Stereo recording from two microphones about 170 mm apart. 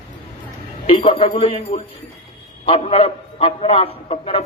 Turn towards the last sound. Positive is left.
turn(degrees=35)  # may be behind; listen again after turning